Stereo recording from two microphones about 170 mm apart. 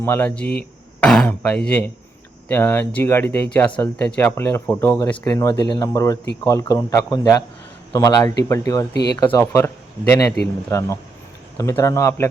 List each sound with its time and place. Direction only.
0.0 s speech: 10° left (ahead or behind)